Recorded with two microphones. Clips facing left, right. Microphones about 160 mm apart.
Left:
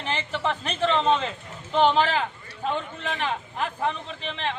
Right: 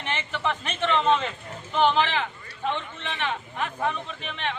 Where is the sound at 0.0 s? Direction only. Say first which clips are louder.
Left 1 dB; 35° left (ahead or behind).